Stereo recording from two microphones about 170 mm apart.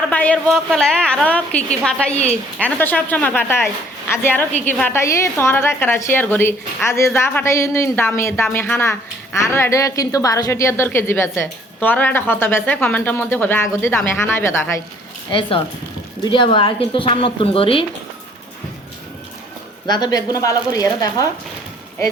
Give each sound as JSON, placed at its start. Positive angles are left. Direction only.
{"t": 0.1, "sound": "a woman's voice", "side_deg": 10}
{"t": 15.3, "sound": "a woman's voice", "side_deg": 30}
{"t": 19.9, "sound": "speech", "side_deg": 25}